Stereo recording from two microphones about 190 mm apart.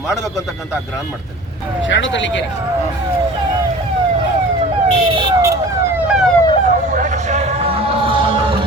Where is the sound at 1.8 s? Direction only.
75° left (ahead or behind).